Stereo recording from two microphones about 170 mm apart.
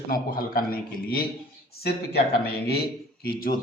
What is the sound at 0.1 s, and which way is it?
A man's voice, 55° left (ahead or behind).